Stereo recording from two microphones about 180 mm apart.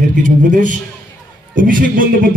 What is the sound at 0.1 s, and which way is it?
A man's voice, 45° right (ahead or behind).